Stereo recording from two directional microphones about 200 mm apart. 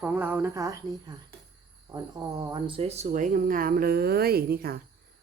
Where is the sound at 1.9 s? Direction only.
20° right (ahead or behind).